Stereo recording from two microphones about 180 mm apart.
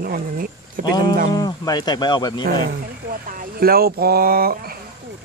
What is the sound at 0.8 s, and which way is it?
Speech, 25° left (ahead or behind).